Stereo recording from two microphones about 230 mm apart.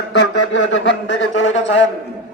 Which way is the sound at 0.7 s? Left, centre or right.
Left.